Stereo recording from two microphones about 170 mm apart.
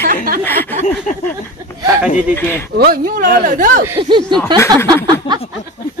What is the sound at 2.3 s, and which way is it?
Speech, 15° left (ahead or behind).